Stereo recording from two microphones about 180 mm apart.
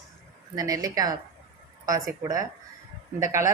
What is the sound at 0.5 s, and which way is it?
A woman's voice, 20° right (ahead or behind).